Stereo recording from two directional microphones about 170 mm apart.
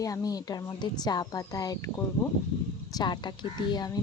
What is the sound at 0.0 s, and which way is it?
Speech, 20° left (ahead or behind).